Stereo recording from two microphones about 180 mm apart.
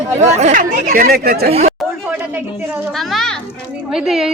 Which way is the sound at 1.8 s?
10° right (ahead or behind).